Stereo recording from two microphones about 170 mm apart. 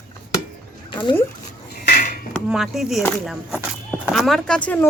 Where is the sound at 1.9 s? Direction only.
55° left (ahead or behind).